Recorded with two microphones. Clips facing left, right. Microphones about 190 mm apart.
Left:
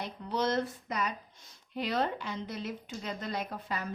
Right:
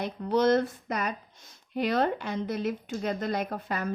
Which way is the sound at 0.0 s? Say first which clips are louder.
Right 8 dB; 50° right (ahead or behind).